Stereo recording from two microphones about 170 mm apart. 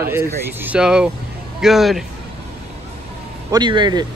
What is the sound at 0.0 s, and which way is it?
A man's voice, 15° right (ahead or behind).